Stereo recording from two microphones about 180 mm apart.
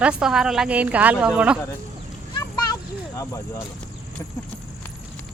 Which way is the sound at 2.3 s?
20° left (ahead or behind).